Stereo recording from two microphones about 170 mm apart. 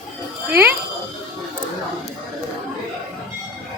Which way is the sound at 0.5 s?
10° right (ahead or behind).